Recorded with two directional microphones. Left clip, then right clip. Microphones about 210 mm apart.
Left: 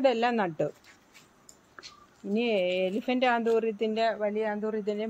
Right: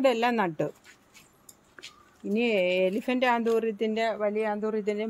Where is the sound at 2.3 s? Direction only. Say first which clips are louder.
Right 2 dB; 35° right (ahead or behind).